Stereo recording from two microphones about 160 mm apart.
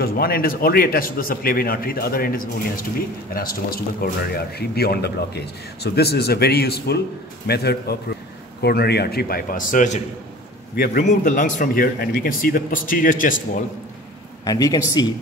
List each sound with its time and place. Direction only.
0.0 s a man's voice: 70° left (ahead or behind); by 13.4 s 55° left (ahead or behind)
14.4 s speech: 25° left (ahead or behind)